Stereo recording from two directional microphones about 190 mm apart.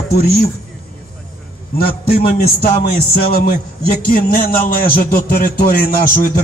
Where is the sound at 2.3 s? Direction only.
55° left (ahead or behind).